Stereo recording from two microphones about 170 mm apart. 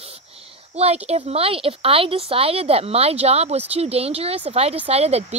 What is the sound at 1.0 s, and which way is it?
Speech, 40° right (ahead or behind).